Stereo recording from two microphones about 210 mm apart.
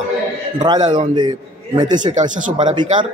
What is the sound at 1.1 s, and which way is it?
A man's voice, 20° right (ahead or behind).